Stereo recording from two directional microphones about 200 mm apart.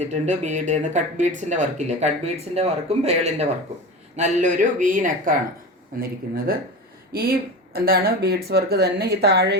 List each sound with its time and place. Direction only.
0.0 s speech: 35° right (ahead or behind); by 9.6 s 55° right (ahead or behind)